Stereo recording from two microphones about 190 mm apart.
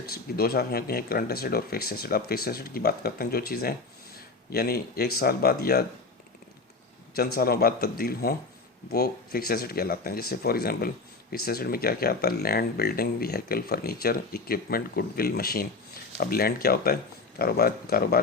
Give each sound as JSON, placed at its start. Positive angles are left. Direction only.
{"t": 0.1, "sound": "speech", "side_deg": 55}
{"t": 7.2, "sound": "speech", "side_deg": 55}